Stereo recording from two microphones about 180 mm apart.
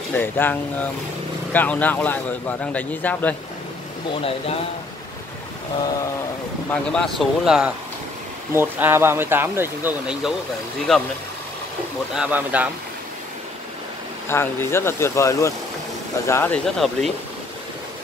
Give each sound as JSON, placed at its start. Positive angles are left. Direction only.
{"t": 0.1, "sound": "a man's voice", "side_deg": 10}
{"t": 4.1, "sound": "speech", "side_deg": 30}
{"t": 6.7, "sound": "speech", "side_deg": 5}
{"t": 12.2, "sound": "speech", "side_deg": -10}
{"t": 14.3, "sound": "a man's voice", "side_deg": 15}